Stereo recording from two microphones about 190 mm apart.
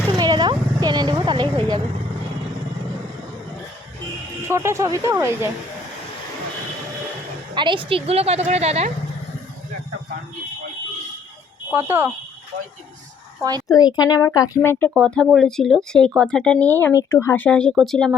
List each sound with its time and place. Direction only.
0.2 s a sound: 20° right (ahead or behind)
4.4 s speech: 15° right (ahead or behind)
7.5 s a woman's voice: 25° right (ahead or behind)
11.7 s speech: 10° right (ahead or behind)
13.7 s speech: 20° left (ahead or behind); by 18.2 s centre (ahead or behind)